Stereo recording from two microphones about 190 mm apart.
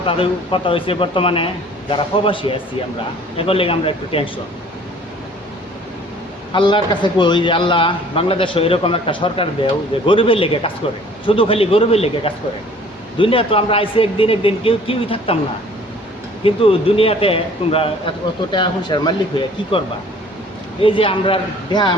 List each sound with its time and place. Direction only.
0.0 s a man's voice: 30° left (ahead or behind)
6.5 s a man's voice: 25° left (ahead or behind)
16.4 s a man's voice: 30° left (ahead or behind)
20.8 s a man's voice: 30° left (ahead or behind)